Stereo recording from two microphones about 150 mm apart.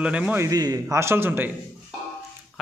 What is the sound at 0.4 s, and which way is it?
A man's voice, 25° right (ahead or behind).